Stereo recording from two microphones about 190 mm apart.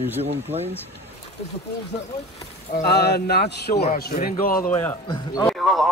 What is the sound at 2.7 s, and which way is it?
Speech, 55° left (ahead or behind).